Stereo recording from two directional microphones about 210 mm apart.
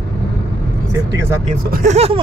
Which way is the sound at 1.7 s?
35° right (ahead or behind).